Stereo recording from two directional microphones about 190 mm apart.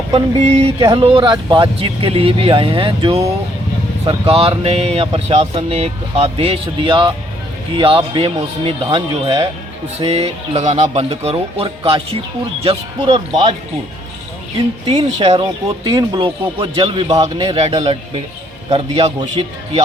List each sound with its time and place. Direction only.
0.1 s speech: 35° right (ahead or behind)
14.8 s speech: 30° right (ahead or behind)